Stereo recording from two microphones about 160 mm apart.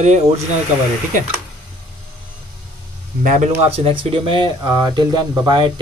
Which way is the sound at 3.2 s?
50° right (ahead or behind).